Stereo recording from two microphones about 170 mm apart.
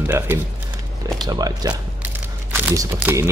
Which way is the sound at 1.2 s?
20° right (ahead or behind).